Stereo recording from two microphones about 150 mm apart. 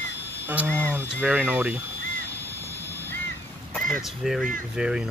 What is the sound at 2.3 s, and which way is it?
Vehicle, 15° left (ahead or behind).